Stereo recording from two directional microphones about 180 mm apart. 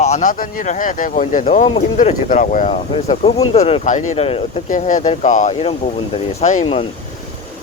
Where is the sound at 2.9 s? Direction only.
35° left (ahead or behind).